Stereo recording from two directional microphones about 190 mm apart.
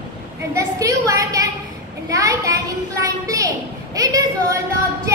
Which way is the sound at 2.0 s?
15° right (ahead or behind).